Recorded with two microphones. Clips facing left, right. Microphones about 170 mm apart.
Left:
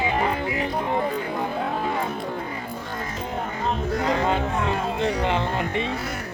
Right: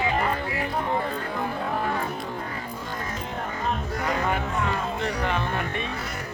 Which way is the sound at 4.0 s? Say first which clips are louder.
Left 4 dB; 20° left (ahead or behind).